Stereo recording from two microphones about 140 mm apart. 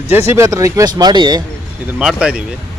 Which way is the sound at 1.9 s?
5° right (ahead or behind).